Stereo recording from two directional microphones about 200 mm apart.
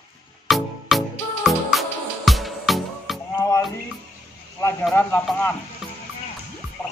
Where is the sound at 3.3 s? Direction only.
15° left (ahead or behind).